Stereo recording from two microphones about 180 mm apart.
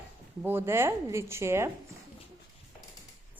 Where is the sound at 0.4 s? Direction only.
10° right (ahead or behind).